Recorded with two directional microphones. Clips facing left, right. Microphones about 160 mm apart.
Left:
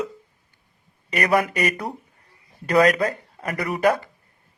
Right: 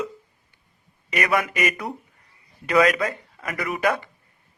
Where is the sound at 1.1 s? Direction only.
35° left (ahead or behind).